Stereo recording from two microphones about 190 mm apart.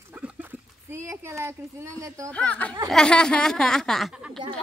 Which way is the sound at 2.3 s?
5° left (ahead or behind).